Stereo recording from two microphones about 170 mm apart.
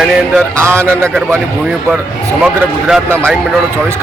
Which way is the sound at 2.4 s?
5° right (ahead or behind).